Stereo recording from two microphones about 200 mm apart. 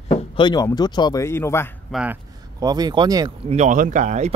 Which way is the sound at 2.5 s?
20° right (ahead or behind).